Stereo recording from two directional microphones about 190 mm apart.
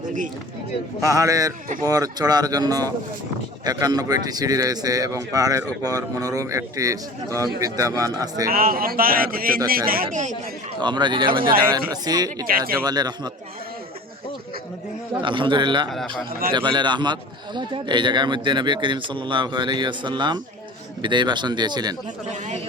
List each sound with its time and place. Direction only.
1.0 s a man's voice: 15° right (ahead or behind)
8.4 s a man's voice: 50° right (ahead or behind)
10.8 s speech: 25° right (ahead or behind)
12.5 s a man's voice: 50° right (ahead or behind)
12.8 s speech: 20° right (ahead or behind)
15.2 s speech: 25° right (ahead or behind)
15.9 s a man's voice: centre (ahead or behind)
16.5 s speech: 25° right (ahead or behind)